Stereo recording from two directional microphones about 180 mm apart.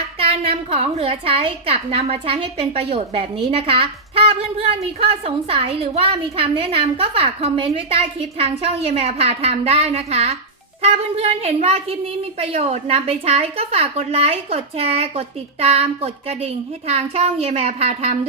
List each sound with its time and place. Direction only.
0.2 s a woman's voice: 35° right (ahead or behind)